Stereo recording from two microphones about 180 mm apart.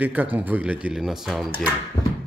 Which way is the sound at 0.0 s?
10° right (ahead or behind).